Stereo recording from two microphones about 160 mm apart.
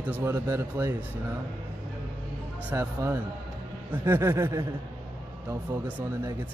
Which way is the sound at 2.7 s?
15° right (ahead or behind).